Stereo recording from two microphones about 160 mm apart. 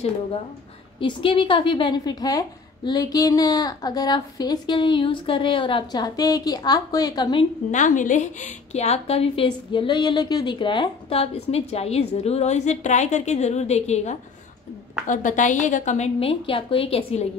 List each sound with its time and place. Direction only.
0.9 s a woman's voice: 35° left (ahead or behind)
7.7 s a woman's voice: 50° left (ahead or behind)